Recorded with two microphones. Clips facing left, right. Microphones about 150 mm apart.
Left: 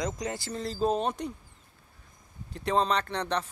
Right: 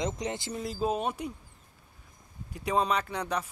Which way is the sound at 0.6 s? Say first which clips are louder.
Left 3 dB; 10° right (ahead or behind).